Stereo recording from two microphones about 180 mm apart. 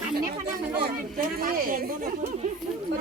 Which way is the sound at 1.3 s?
50° right (ahead or behind).